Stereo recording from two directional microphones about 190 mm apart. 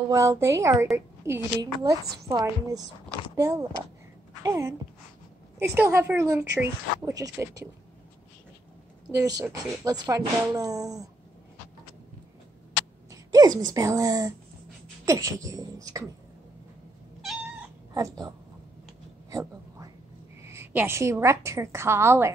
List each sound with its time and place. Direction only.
0.1 s a woman's voice: 15° right (ahead or behind)
9.1 s a woman's voice: 20° right (ahead or behind)
13.1 s a woman's voice: 20° right (ahead or behind)
17.2 s cat: centre (ahead or behind)
17.9 s speech: 20° right (ahead or behind)
20.4 s a woman's voice: 10° right (ahead or behind)